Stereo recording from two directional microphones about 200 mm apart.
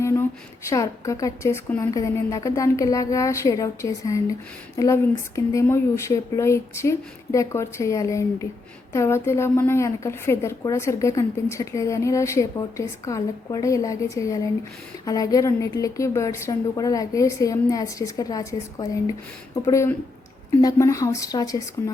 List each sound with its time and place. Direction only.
0.0 s a woman's voice: 15° left (ahead or behind)